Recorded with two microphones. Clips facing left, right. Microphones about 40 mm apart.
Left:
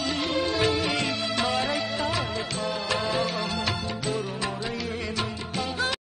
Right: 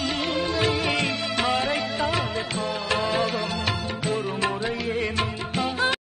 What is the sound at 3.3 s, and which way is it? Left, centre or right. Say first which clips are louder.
Music: right 2 dB; right.